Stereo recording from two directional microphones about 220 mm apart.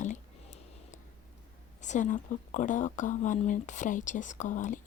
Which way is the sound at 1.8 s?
35° left (ahead or behind).